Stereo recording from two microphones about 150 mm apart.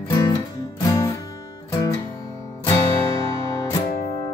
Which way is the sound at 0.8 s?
20° left (ahead or behind).